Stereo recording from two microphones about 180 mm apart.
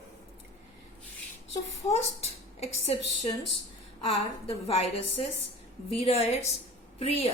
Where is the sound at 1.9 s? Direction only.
35° left (ahead or behind).